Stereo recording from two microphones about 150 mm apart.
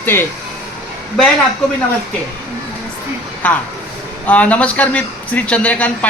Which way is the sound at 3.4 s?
10° left (ahead or behind).